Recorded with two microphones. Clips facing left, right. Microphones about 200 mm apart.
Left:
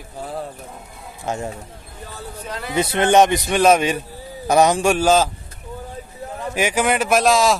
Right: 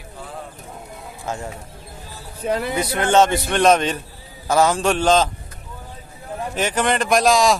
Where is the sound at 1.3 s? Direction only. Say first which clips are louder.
Left 3 dB; 20° left (ahead or behind).